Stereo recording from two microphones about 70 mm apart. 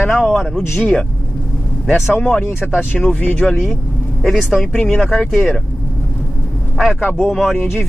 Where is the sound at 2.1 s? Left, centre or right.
Centre.